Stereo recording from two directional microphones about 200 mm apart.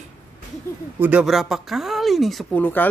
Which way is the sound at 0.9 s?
10° right (ahead or behind).